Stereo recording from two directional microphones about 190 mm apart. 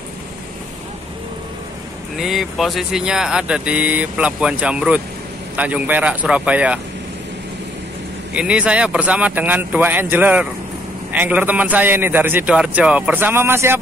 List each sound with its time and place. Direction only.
2.1 s a man's voice: centre (ahead or behind)
8.3 s a man's voice: 5° right (ahead or behind)